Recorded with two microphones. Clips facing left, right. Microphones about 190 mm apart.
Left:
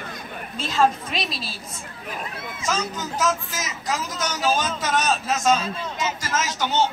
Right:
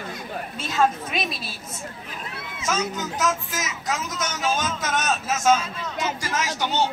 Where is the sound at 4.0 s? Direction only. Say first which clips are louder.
Left 2 dB; 35° left (ahead or behind).